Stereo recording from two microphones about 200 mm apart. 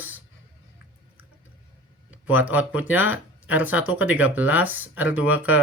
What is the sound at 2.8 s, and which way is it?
Speech, 10° right (ahead or behind).